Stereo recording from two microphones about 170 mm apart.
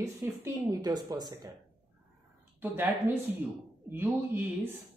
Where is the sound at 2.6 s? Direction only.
10° right (ahead or behind).